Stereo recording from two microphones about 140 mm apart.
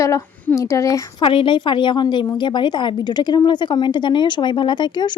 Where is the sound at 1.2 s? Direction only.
40° left (ahead or behind).